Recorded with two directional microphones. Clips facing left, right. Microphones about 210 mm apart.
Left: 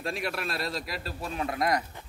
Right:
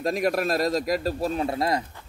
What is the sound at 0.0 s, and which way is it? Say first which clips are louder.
A man's voice: right 9 dB; 40° right (ahead or behind).